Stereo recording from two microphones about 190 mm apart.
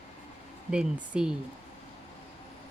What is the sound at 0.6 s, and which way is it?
Speech, 5° right (ahead or behind).